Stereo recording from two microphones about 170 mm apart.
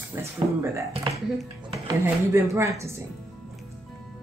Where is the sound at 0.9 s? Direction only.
35° right (ahead or behind).